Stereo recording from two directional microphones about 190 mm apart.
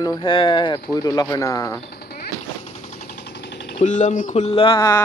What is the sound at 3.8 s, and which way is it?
Speech, 40° left (ahead or behind).